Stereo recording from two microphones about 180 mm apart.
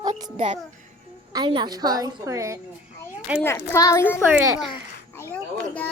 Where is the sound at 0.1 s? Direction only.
40° right (ahead or behind).